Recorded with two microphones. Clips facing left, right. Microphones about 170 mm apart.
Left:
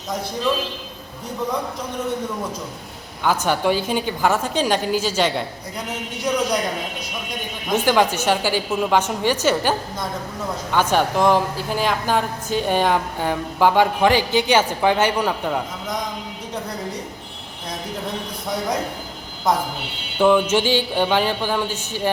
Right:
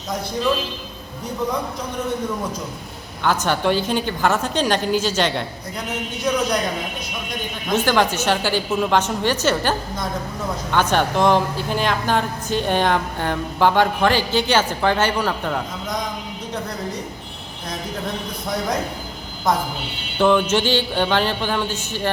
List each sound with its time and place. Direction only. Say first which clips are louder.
3.2 s a woman's voice: even; 10° left (ahead or behind)
7.7 s a woman's voice: left 1 dB; 15° left (ahead or behind)
19.5 s a woman's voice: even; 10° left (ahead or behind)